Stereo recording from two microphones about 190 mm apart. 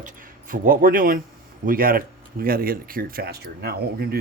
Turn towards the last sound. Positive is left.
turn(degrees=-55)  # may be behind; listen again after turning